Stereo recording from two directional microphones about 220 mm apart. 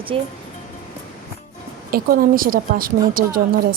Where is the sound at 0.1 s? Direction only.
25° right (ahead or behind).